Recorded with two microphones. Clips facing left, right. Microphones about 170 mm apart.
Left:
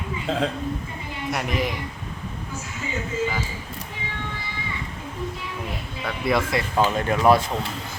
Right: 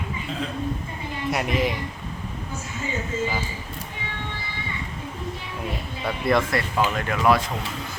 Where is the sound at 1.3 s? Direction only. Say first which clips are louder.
Right 2 dB; centre (ahead or behind).